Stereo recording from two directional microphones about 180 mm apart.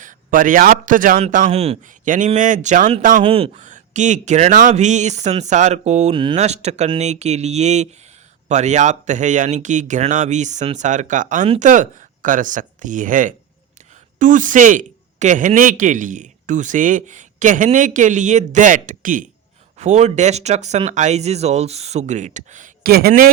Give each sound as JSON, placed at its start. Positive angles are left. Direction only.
{"t": 0.0, "sound": "a man's voice", "side_deg": -45}
{"t": 1.5, "sound": "speech", "side_deg": -35}
{"t": 3.2, "sound": "speech", "side_deg": -30}
{"t": 3.5, "sound": "speech", "side_deg": -45}